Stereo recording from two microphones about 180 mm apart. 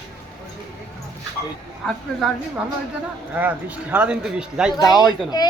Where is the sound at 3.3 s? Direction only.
10° right (ahead or behind).